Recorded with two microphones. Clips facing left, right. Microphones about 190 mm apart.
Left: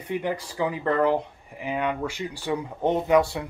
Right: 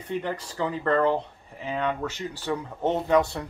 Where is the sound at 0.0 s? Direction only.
10° left (ahead or behind).